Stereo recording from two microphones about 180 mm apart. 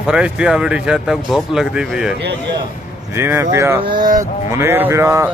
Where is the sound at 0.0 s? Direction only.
5° right (ahead or behind).